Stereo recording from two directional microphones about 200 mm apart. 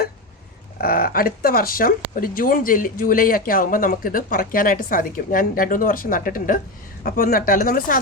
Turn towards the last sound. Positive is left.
turn(degrees=45)  # may be behind; listen again after turning